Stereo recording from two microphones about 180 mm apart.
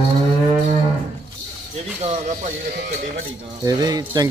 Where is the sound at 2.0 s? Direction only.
40° right (ahead or behind).